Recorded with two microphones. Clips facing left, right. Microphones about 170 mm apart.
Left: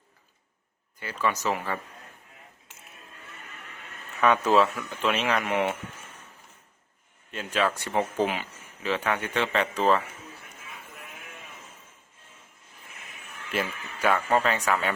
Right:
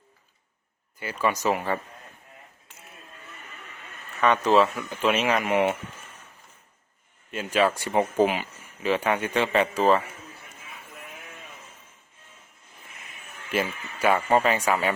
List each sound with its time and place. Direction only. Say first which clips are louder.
0.9 s speech: right 2 dB; 10° right (ahead or behind)
4.2 s speech: right 1 dB; 5° left (ahead or behind)
7.3 s speech: right 4 dB; 10° right (ahead or behind)
13.5 s speech: right 3 dB; 5° right (ahead or behind)